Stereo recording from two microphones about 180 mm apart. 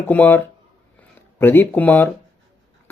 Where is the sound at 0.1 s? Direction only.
10° left (ahead or behind).